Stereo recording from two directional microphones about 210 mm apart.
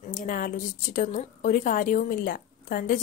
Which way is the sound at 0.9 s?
40° left (ahead or behind).